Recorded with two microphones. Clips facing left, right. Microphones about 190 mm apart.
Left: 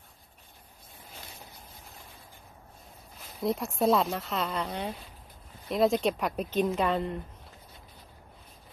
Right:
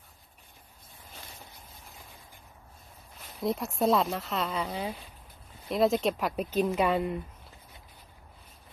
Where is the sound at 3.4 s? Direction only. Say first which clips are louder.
Left 1 dB; centre (ahead or behind).